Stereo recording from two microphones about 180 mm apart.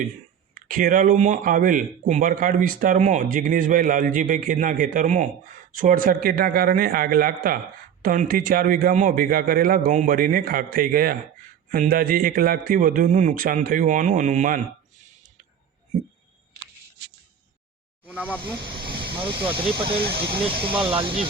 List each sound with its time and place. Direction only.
0.5 s speech: 50° right (ahead or behind)
18.0 s a sound: 10° right (ahead or behind)
18.6 s vehicle: 25° right (ahead or behind)
19.1 s speech: 25° right (ahead or behind)
20.0 s speech: 65° right (ahead or behind)
20.4 s speech: 30° right (ahead or behind)